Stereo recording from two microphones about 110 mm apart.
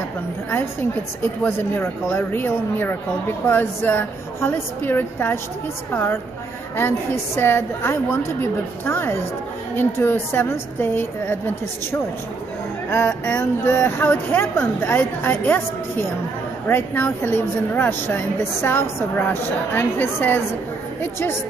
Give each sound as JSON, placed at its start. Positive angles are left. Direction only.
{"t": 1.2, "sound": "speech", "side_deg": 20}
{"t": 6.8, "sound": "speech", "side_deg": 20}
{"t": 12.9, "sound": "speech", "side_deg": 20}